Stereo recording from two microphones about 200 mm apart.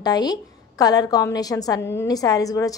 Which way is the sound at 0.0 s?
20° left (ahead or behind).